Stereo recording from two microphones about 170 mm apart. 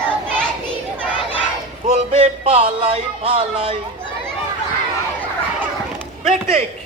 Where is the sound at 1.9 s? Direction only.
40° right (ahead or behind).